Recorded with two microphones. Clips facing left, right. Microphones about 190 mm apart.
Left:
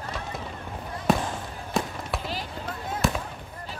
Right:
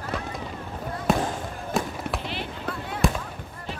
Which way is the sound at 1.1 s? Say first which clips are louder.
Even; centre (ahead or behind).